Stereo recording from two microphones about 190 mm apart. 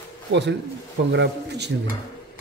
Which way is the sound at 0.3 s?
65° right (ahead or behind).